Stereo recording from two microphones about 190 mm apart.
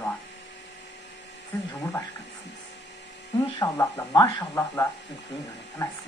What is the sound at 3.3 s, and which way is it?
Speech, 15° left (ahead or behind).